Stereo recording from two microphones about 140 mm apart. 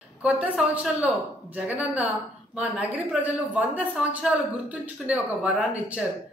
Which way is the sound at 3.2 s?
10° right (ahead or behind).